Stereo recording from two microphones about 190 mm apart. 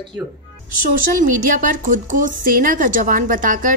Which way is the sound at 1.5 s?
45° right (ahead or behind).